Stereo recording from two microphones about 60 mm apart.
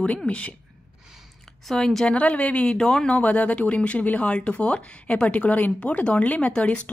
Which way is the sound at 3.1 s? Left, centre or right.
Left.